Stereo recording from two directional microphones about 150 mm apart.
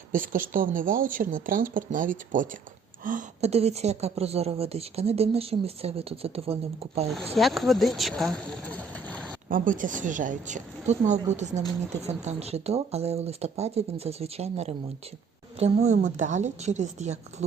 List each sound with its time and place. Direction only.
0.1 s speech: 65° right (ahead or behind)
3.4 s a woman's voice: 45° right (ahead or behind)
7.1 s speech: centre (ahead or behind)
9.5 s a woman's voice: 60° right (ahead or behind)